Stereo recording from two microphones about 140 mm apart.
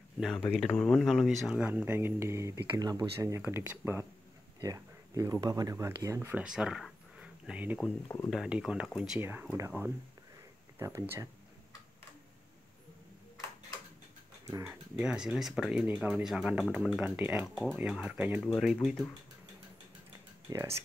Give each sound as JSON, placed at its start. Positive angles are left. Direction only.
{"t": 0.2, "sound": "speech", "side_deg": 0}
{"t": 4.6, "sound": "speech", "side_deg": -25}
{"t": 7.8, "sound": "speech", "side_deg": 20}
{"t": 8.3, "sound": "speech", "side_deg": -5}
{"t": 9.3, "sound": "speech", "side_deg": -15}
{"t": 14.6, "sound": "speech", "side_deg": -5}
{"t": 20.4, "sound": "speech", "side_deg": -20}